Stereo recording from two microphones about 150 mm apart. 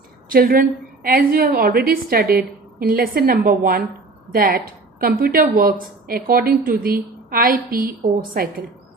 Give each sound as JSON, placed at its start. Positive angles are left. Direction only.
{"t": 0.3, "sound": "a woman's voice", "side_deg": -75}